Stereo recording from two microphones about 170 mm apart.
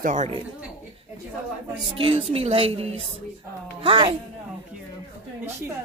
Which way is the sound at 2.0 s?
35° right (ahead or behind).